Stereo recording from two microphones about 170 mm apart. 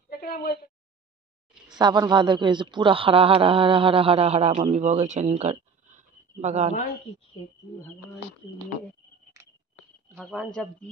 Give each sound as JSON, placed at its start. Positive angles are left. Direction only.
{"t": 0.1, "sound": "a woman's voice", "side_deg": 60}
{"t": 1.8, "sound": "a man's voice", "side_deg": -25}
{"t": 10.2, "sound": "speech", "side_deg": 5}